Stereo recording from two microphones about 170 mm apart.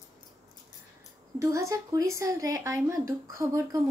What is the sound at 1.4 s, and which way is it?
A woman's voice, 20° right (ahead or behind).